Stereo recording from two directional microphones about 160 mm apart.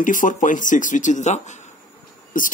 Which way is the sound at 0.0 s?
55° left (ahead or behind).